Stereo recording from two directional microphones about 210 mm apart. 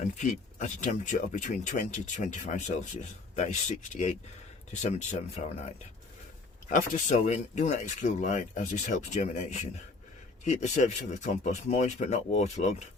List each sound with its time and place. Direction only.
0.0 s speech: 35° left (ahead or behind)